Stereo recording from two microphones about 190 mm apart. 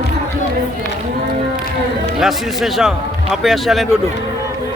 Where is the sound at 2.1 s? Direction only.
Centre (ahead or behind).